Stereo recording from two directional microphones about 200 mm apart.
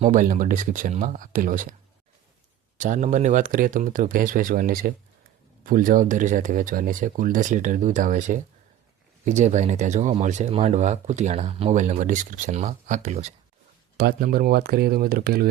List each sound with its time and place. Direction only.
0.0 s speech: 40° right (ahead or behind)
2.7 s speech: 40° right (ahead or behind)
13.9 s speech: 50° right (ahead or behind)